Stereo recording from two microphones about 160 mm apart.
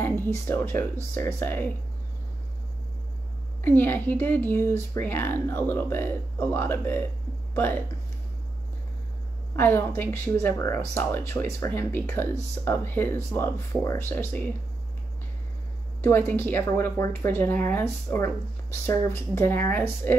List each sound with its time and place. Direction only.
0.0 s speech: 15° left (ahead or behind)
3.6 s speech: 10° left (ahead or behind)
9.6 s speech: 10° left (ahead or behind)
16.0 s speech: 15° left (ahead or behind)